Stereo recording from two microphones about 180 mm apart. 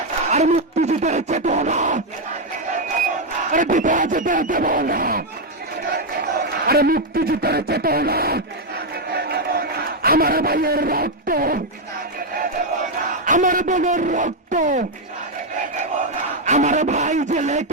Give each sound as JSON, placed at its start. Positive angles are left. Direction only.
{"t": 0.3, "sound": "speech", "side_deg": -40}
{"t": 3.5, "sound": "speech", "side_deg": -45}
{"t": 6.7, "sound": "speech", "side_deg": -55}
{"t": 9.1, "sound": "a sound", "side_deg": -60}
{"t": 13.2, "sound": "speech", "side_deg": -45}
{"t": 16.5, "sound": "speech", "side_deg": -40}